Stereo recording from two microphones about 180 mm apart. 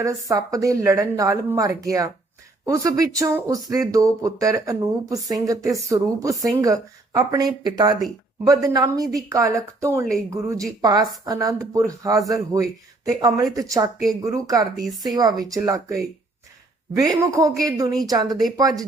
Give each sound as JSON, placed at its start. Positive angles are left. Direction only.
{"t": 0.0, "sound": "a woman's voice", "side_deg": -20}
{"t": 14.8, "sound": "speech", "side_deg": 0}
{"t": 15.0, "sound": "a woman's voice", "side_deg": -20}